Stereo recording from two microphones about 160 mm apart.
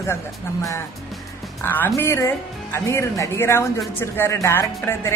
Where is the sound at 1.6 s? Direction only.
10° left (ahead or behind).